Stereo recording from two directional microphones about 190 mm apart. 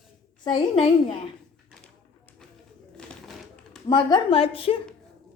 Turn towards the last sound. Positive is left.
turn(degrees=30)  # may be behind; listen again after turning